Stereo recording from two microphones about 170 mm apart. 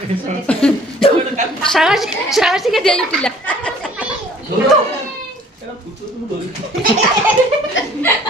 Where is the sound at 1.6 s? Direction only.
Centre (ahead or behind).